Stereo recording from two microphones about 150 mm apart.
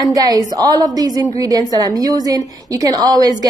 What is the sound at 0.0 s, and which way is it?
A woman's voice, 25° right (ahead or behind).